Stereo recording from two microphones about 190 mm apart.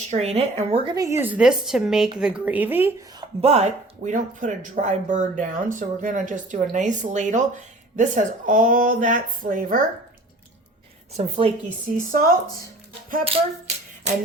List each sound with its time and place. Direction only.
0.1 s speech: 35° right (ahead or behind)
0.9 s a woman's voice: 15° right (ahead or behind)
3.2 s speech: 35° right (ahead or behind)
11.1 s speech: 30° right (ahead or behind)
11.9 s speech: 50° right (ahead or behind)